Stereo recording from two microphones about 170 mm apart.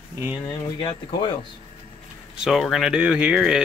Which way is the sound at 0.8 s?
30° left (ahead or behind).